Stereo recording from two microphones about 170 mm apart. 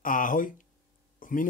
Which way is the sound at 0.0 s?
50° left (ahead or behind).